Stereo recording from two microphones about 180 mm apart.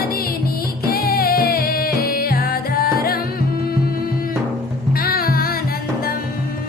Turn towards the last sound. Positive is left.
turn(degrees=55)  # may be behind; listen again after turning